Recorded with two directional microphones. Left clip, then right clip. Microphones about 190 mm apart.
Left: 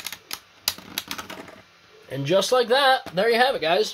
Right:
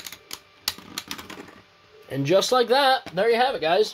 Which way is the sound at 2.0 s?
40° right (ahead or behind).